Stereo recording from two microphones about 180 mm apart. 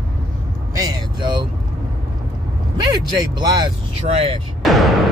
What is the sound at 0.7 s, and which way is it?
Vehicle, 25° right (ahead or behind).